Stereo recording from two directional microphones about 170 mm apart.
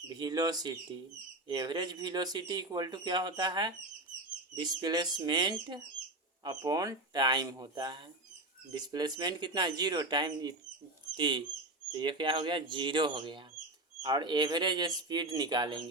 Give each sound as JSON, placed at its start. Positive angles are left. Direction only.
{"t": 0.1, "sound": "speech", "side_deg": -25}